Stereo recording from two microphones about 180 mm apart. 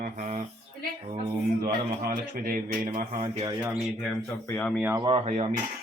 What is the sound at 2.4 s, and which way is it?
Speech, 50° right (ahead or behind).